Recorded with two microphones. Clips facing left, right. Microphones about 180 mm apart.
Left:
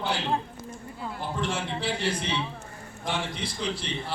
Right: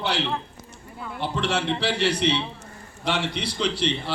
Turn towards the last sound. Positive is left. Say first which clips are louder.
# right 6 dB
turn(degrees=-75)  # may be behind; listen again after turning